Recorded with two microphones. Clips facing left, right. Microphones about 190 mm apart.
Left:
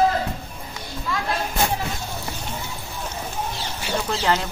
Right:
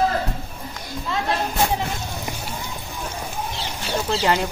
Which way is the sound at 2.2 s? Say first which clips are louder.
Right 1 dB; 15° right (ahead or behind).